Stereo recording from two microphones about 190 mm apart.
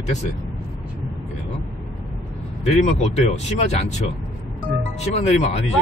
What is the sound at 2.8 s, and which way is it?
Speech, 35° left (ahead or behind).